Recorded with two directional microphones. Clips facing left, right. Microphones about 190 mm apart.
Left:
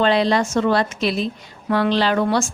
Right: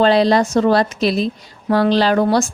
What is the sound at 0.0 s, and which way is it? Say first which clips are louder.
A woman's voice: right 4 dB; 35° right (ahead or behind).